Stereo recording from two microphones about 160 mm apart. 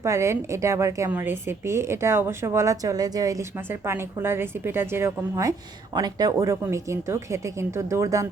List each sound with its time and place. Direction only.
0.0 s a woman's voice: 15° right (ahead or behind)